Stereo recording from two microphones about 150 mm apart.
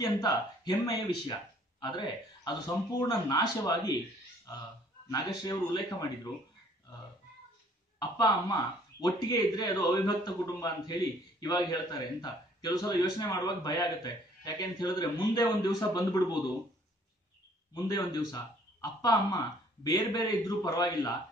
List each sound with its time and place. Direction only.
0.0 s a man's voice: 25° left (ahead or behind)
5.1 s a man's voice: 30° left (ahead or behind)
8.0 s a man's voice: 25° left (ahead or behind)
17.8 s a man's voice: 25° left (ahead or behind)